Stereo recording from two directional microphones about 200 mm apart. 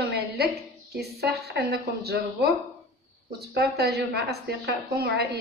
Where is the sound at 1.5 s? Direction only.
55° right (ahead or behind).